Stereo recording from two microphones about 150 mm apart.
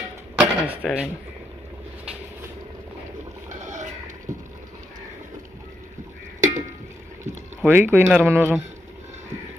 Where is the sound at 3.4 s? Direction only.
55° right (ahead or behind).